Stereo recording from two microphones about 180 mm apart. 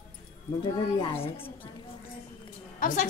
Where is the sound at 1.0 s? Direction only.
30° left (ahead or behind).